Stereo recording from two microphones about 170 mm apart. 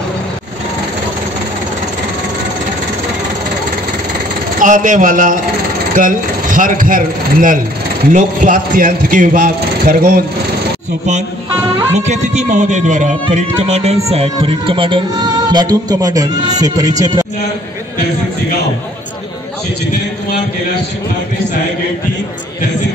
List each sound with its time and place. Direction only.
4.6 s a man's voice: 50° right (ahead or behind)
11.9 s music: 40° right (ahead or behind); by 17.3 s 20° right (ahead or behind)